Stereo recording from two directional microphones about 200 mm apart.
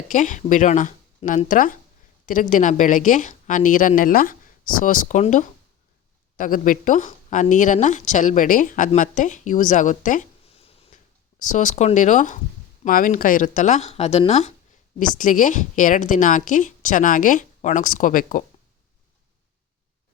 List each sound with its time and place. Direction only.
0.1 s a woman's voice: 40° left (ahead or behind)